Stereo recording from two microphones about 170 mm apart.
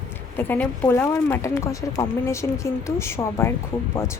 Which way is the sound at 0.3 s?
10° left (ahead or behind).